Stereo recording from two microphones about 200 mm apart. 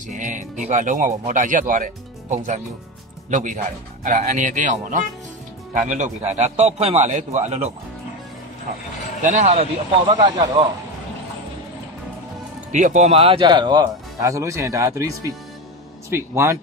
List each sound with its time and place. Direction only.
0.1 s speech: 40° right (ahead or behind)
9.2 s speech: 40° right (ahead or behind); by 10.3 s 20° right (ahead or behind)
12.7 s a man's voice: 35° right (ahead or behind); by 16.5 s 15° right (ahead or behind)